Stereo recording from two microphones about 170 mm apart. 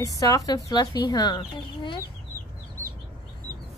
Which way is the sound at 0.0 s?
20° left (ahead or behind).